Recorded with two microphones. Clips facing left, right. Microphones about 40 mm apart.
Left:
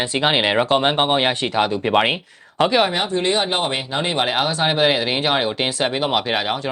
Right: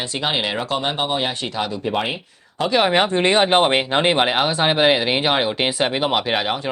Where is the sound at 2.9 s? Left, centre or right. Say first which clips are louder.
Right 4 dB; right.